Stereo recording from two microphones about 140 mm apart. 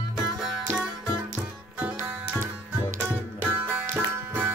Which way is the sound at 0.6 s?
5° right (ahead or behind).